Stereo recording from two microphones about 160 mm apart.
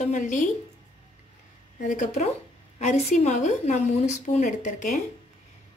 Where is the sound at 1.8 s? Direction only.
50° left (ahead or behind).